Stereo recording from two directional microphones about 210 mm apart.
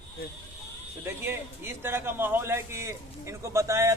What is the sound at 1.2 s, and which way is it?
A man's voice, 10° right (ahead or behind).